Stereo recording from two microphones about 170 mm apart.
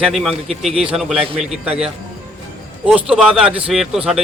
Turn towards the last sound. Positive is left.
turn(degrees=-5)  # may be behind; listen again after turning